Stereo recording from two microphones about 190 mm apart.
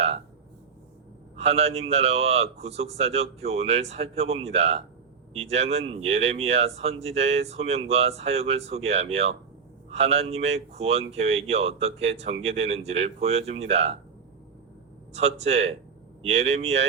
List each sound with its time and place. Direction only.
1.4 s speech: 35° right (ahead or behind)
15.1 s speech: 35° right (ahead or behind)